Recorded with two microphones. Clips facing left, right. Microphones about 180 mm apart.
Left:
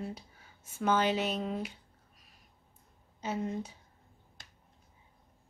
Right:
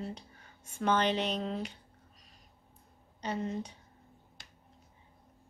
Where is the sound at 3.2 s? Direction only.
5° left (ahead or behind).